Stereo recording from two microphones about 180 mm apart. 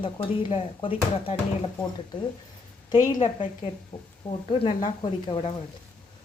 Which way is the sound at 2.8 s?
20° left (ahead or behind).